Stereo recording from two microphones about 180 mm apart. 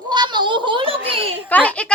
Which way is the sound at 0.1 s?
25° right (ahead or behind).